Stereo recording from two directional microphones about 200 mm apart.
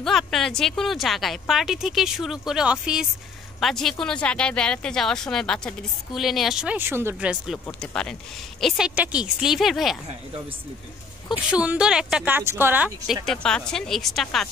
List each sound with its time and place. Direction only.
0.0 s speech: centre (ahead or behind)
11.5 s speech: 5° right (ahead or behind)